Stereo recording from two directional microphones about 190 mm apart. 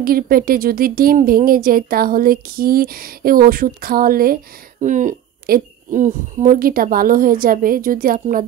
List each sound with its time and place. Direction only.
0.0 s speech: 50° right (ahead or behind)